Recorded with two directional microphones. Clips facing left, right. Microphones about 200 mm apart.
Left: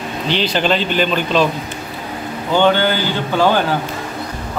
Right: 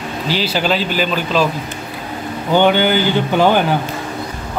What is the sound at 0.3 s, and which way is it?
A man's voice, 5° right (ahead or behind).